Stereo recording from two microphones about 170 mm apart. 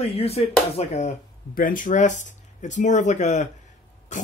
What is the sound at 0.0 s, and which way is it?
Speech, 35° left (ahead or behind).